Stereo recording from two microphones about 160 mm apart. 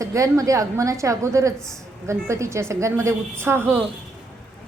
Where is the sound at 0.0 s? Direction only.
20° right (ahead or behind).